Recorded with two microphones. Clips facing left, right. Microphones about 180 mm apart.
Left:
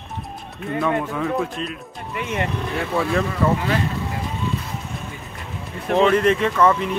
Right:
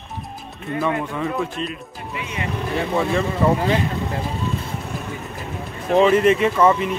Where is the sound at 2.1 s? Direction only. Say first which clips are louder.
Left 4 dB; 55° left (ahead or behind).